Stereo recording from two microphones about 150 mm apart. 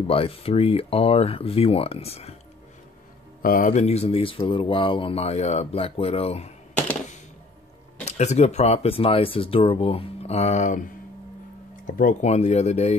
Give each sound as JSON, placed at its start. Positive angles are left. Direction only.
{"t": 0.0, "sound": "speech", "side_deg": 40}
{"t": 3.4, "sound": "speech", "side_deg": 65}
{"t": 8.0, "sound": "speech", "side_deg": 50}